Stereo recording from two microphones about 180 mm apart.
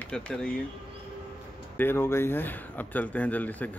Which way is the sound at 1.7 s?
10° left (ahead or behind).